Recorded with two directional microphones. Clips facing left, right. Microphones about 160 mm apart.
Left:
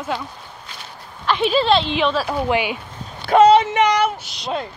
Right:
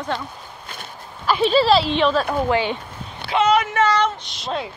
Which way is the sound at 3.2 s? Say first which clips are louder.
Left 7 dB; 45° left (ahead or behind).